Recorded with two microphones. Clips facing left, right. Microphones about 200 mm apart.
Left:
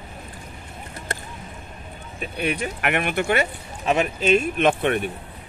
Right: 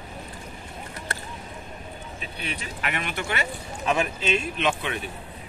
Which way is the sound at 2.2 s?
55° left (ahead or behind).